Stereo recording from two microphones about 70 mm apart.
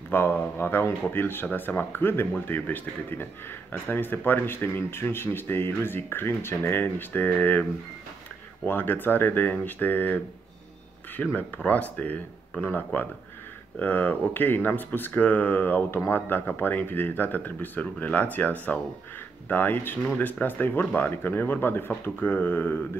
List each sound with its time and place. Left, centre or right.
0.1 s speech: left
8.6 s speech: left